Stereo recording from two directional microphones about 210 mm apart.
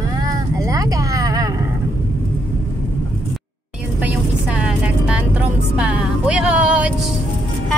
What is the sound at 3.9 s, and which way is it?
Music, 5° right (ahead or behind).